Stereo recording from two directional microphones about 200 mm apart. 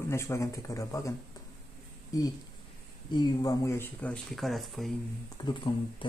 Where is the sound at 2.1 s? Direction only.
15° left (ahead or behind); by 4.9 s centre (ahead or behind).